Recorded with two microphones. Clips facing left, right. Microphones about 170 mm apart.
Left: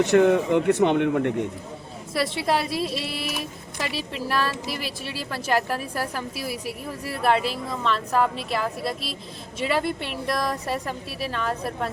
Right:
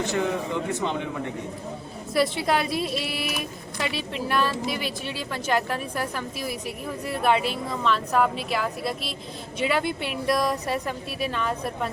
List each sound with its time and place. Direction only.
0.0 s speech: 65° left (ahead or behind)
2.4 s speech: centre (ahead or behind)